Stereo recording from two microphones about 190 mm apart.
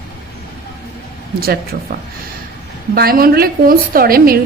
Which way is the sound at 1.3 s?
50° right (ahead or behind).